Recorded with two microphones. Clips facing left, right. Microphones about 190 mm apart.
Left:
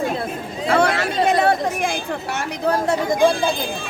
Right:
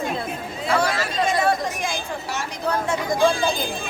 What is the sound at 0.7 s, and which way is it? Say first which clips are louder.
Chatter: left 4 dB; 60° left (ahead or behind).